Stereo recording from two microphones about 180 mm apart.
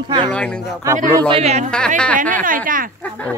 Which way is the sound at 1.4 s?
35° right (ahead or behind).